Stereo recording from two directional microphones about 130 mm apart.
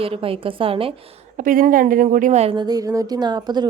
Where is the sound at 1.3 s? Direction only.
90° right.